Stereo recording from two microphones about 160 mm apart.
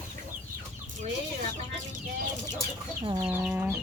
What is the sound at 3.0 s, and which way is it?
Speech, 25° right (ahead or behind).